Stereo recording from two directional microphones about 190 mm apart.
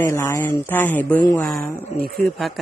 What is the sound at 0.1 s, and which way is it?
Speech, 15° left (ahead or behind).